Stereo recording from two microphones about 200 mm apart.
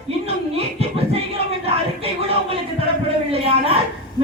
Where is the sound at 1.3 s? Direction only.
30° right (ahead or behind).